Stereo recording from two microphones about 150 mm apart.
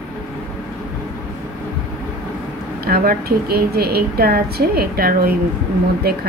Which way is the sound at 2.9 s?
90° right.